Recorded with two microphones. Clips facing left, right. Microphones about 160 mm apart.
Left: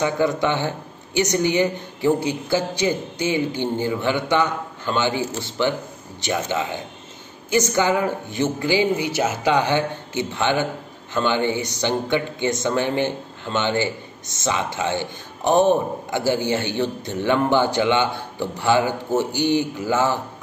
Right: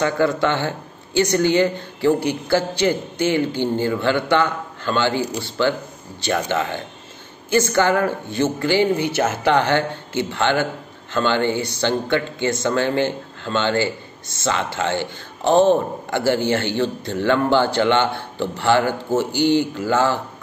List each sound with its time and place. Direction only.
0.0 s speech: 15° left (ahead or behind)